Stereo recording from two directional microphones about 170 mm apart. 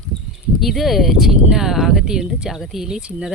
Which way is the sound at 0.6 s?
Centre (ahead or behind).